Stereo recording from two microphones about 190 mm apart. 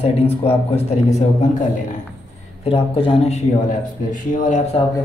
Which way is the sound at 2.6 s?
30° left (ahead or behind).